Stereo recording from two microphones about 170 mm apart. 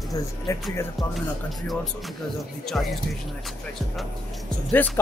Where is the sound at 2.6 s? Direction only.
Centre (ahead or behind).